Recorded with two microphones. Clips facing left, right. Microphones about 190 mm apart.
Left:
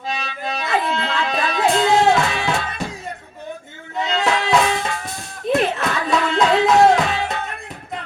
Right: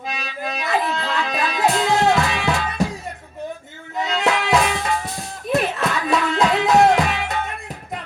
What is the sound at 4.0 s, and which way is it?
Music, 25° left (ahead or behind).